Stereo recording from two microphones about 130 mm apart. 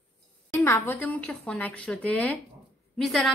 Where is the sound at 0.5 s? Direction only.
20° left (ahead or behind); by 3.2 s 5° left (ahead or behind).